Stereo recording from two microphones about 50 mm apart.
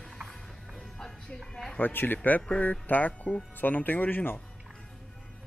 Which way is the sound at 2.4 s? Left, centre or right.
Left.